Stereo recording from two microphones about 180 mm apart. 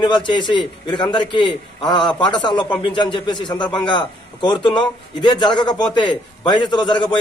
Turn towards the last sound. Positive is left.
turn(degrees=25)  # may be behind; listen again after turning